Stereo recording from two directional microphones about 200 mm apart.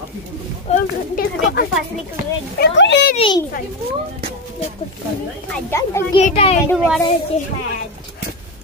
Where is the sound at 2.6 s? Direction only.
65° left (ahead or behind).